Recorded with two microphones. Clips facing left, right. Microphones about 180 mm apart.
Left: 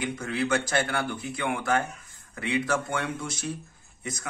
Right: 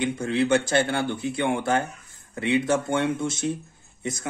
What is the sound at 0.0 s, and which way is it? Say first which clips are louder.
Speech: right 5 dB; 25° right (ahead or behind).